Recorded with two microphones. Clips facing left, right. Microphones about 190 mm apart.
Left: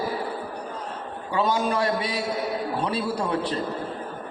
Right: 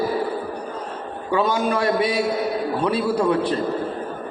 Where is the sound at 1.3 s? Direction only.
35° left (ahead or behind).